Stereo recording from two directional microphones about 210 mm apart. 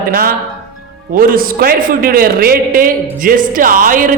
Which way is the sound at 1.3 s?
45° right (ahead or behind).